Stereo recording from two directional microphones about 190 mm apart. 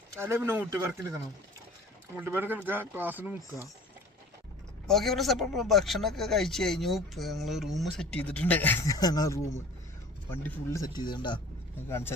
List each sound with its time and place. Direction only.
0.2 s speech: 15° right (ahead or behind)
2.1 s speech: 10° right (ahead or behind)
4.9 s speech: centre (ahead or behind); by 11.3 s 25° left (ahead or behind)
11.9 s speech: 15° left (ahead or behind)